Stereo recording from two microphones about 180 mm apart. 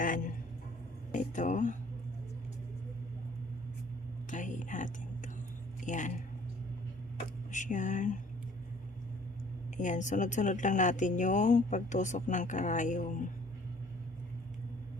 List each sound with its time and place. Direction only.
0.0 s a sound: 50° left (ahead or behind)
1.1 s speech: 45° left (ahead or behind)
4.3 s whispering: 45° left (ahead or behind)
5.8 s speech: 45° left (ahead or behind)
7.5 s speech: 45° left (ahead or behind)
9.7 s speech: 45° left (ahead or behind)